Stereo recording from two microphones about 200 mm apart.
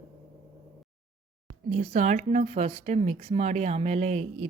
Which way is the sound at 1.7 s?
35° right (ahead or behind).